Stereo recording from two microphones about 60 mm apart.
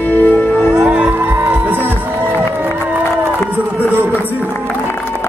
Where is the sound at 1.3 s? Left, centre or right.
Right.